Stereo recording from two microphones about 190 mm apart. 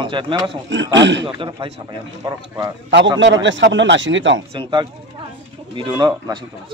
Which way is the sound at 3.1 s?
75° right (ahead or behind).